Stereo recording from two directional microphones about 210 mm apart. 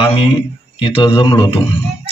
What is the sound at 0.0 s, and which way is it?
Speech, 25° left (ahead or behind).